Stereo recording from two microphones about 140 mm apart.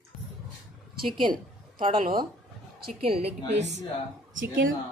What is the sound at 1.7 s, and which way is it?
Speech, 75° right (ahead or behind).